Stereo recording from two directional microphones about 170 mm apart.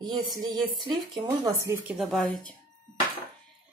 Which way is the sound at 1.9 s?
Centre (ahead or behind).